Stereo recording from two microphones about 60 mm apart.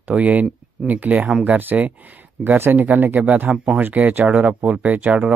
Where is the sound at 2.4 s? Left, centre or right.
Centre.